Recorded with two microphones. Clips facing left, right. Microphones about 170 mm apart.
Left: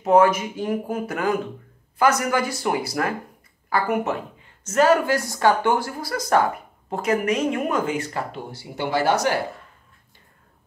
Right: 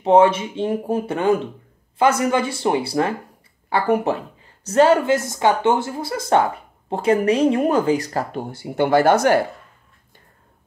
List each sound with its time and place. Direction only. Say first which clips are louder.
0.0 s speech: right 3 dB; 30° right (ahead or behind); by 9.4 s 50° right (ahead or behind)